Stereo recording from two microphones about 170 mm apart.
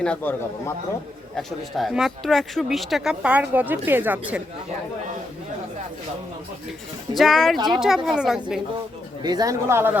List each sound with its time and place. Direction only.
0.0 s speech: 10° left (ahead or behind); by 4.4 s 10° right (ahead or behind)
7.2 s speech: centre (ahead or behind)
9.2 s a man's voice: 20° right (ahead or behind)